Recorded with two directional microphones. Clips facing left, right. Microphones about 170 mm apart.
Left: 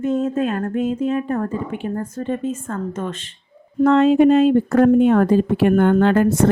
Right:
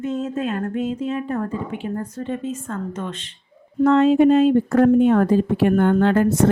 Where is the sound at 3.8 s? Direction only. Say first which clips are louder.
Left 1 dB; 70° left (ahead or behind).